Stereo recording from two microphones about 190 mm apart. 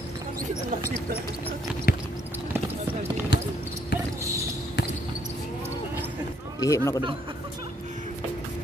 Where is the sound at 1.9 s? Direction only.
55° left (ahead or behind).